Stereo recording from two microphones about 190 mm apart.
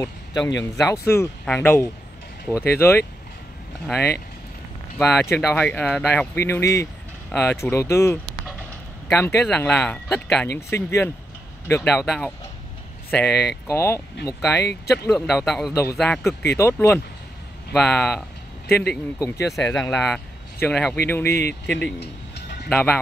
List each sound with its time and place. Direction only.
0.0 s speech: 20° left (ahead or behind)
13.3 s speech: 60° left (ahead or behind)
13.7 s speech: 15° left (ahead or behind)
15.7 s speech: 15° left (ahead or behind)
18.7 s speech: 55° left (ahead or behind)
19.1 s speech: 15° left (ahead or behind)
21.3 s speech: 60° left (ahead or behind)
21.6 s speech: 5° left (ahead or behind)
22.0 s a sound: 60° left (ahead or behind)
22.7 s speech: 10° left (ahead or behind)